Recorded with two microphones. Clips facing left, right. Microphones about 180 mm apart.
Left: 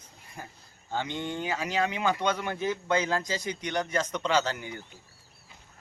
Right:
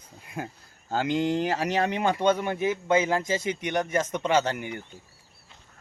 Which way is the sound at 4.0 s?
45° right (ahead or behind).